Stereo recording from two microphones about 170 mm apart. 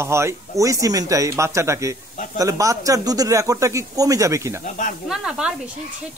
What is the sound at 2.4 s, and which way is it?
Speech, 20° right (ahead or behind).